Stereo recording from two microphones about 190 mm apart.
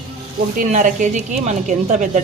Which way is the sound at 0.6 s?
45° right (ahead or behind).